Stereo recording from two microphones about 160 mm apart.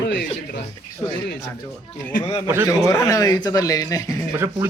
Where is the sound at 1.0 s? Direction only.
30° left (ahead or behind).